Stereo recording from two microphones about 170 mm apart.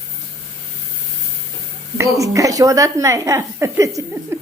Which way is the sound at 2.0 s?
20° right (ahead or behind).